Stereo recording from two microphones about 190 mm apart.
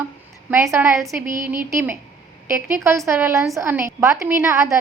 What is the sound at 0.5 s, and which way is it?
A woman's voice, 15° right (ahead or behind).